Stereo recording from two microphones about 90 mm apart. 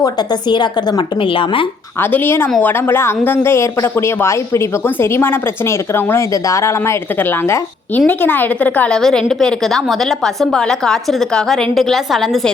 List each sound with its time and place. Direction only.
0.0 s a woman's voice: 50° left (ahead or behind)
1.2 s speech: 75° left (ahead or behind)
2.0 s speech: 25° left (ahead or behind)
9.0 s a woman's voice: 5° left (ahead or behind)